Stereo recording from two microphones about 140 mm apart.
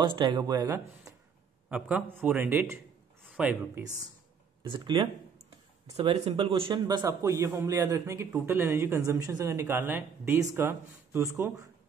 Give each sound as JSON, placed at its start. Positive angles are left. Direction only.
{"t": 0.0, "sound": "a man's voice", "side_deg": -35}
{"t": 1.7, "sound": "a man's voice", "side_deg": -10}
{"t": 4.6, "sound": "a man's voice", "side_deg": -35}